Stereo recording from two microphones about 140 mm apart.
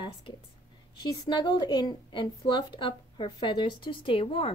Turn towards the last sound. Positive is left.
turn(degrees=40)  # may be behind; listen again after turning